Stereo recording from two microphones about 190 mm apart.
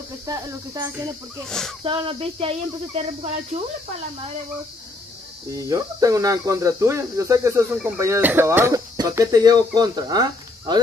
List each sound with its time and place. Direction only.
0.3 s speech: 15° right (ahead or behind)
1.8 s speech: 30° right (ahead or behind)
5.5 s speech: 20° right (ahead or behind)